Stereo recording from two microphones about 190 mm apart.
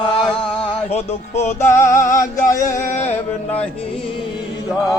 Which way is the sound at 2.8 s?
40° left (ahead or behind).